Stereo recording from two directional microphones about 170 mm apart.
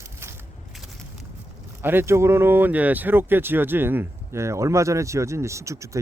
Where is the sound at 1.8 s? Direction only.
10° right (ahead or behind).